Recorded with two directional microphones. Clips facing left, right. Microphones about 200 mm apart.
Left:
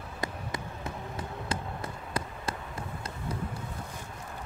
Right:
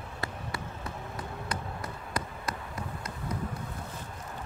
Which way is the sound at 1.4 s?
25° left (ahead or behind).